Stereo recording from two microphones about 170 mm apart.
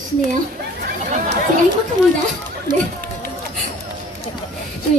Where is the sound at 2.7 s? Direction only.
25° right (ahead or behind).